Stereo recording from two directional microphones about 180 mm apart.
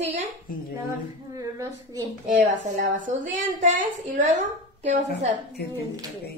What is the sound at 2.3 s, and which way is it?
A woman's voice, 45° right (ahead or behind).